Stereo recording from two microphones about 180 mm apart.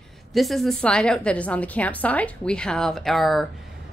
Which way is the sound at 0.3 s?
Centre (ahead or behind).